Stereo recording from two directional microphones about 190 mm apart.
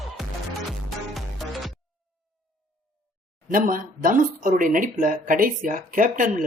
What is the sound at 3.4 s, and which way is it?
Speech, 45° right (ahead or behind).